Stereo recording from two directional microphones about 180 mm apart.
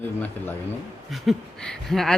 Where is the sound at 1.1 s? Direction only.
Centre (ahead or behind).